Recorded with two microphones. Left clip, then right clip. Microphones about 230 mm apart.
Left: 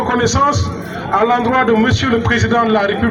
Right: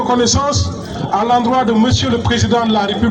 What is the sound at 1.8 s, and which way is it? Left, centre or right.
Speech, right.